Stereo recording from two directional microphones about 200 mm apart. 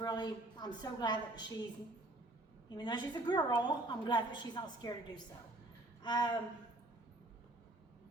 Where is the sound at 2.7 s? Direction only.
20° left (ahead or behind).